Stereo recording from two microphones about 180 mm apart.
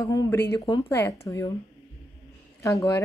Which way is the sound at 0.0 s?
20° left (ahead or behind).